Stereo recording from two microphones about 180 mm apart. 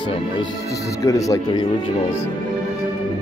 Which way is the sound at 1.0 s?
20° left (ahead or behind).